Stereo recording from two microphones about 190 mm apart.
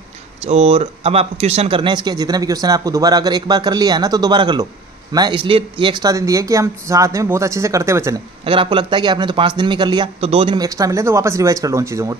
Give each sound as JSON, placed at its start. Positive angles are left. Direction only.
{"t": 0.4, "sound": "speech", "side_deg": -35}
{"t": 8.5, "sound": "speech", "side_deg": -25}
{"t": 10.6, "sound": "speech", "side_deg": -20}